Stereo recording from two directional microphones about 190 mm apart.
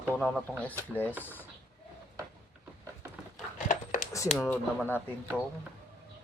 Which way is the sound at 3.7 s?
40° left (ahead or behind).